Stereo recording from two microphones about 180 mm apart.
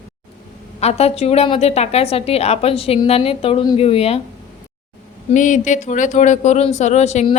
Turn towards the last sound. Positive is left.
turn(degrees=40)  # may be behind; listen again after turning